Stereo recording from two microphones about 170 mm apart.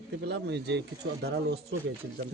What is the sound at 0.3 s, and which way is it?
Speech, 85° right.